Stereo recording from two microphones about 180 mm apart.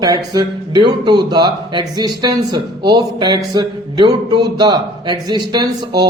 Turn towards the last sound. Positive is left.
turn(degrees=-25)  # may be behind; listen again after turning